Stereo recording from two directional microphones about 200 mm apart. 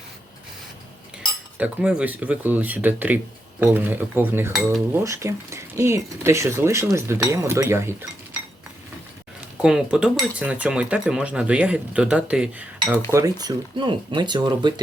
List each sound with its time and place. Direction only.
1.5 s speech: 5° right (ahead or behind)
9.6 s speech: 5° right (ahead or behind)
13.1 s speech: 15° right (ahead or behind)